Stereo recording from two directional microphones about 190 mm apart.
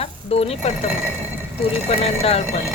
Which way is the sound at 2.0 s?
35° left (ahead or behind).